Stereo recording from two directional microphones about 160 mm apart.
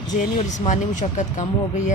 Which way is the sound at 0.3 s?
50° left (ahead or behind).